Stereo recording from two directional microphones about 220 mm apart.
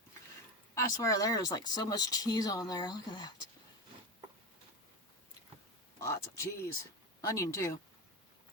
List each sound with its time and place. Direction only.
0.7 s speech: 15° left (ahead or behind)
6.0 s speech: 15° left (ahead or behind)